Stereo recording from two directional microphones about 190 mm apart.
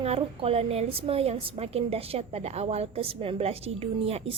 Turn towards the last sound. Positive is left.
turn(degrees=-30)  # may be behind; listen again after turning